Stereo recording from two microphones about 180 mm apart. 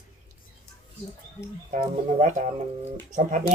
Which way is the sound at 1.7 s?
45° right (ahead or behind).